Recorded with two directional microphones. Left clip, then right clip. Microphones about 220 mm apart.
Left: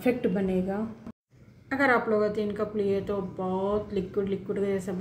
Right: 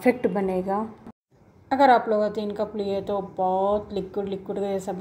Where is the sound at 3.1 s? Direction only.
65° right (ahead or behind).